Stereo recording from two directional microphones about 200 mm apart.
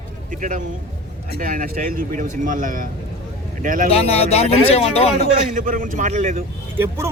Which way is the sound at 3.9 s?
30° left (ahead or behind).